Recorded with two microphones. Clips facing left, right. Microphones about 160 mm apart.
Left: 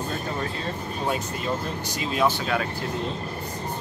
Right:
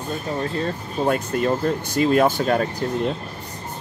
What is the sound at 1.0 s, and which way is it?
Speech, 55° right (ahead or behind).